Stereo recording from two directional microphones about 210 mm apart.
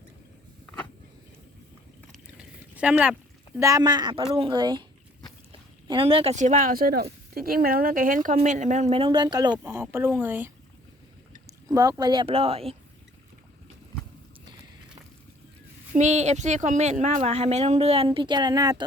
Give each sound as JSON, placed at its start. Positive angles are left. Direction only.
{"t": 2.1, "sound": "a sound", "side_deg": -5}
{"t": 3.7, "sound": "speech", "side_deg": -20}
{"t": 11.7, "sound": "speech", "side_deg": -15}
{"t": 16.0, "sound": "speech", "side_deg": -35}